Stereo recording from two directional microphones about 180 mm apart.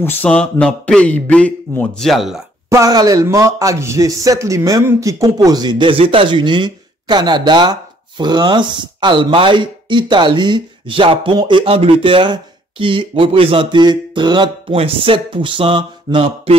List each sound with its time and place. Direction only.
0.0 s a man's voice: 10° left (ahead or behind)
2.7 s speech: 20° right (ahead or behind)